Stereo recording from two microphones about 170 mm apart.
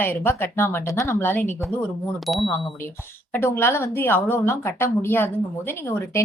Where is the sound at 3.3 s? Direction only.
15° left (ahead or behind).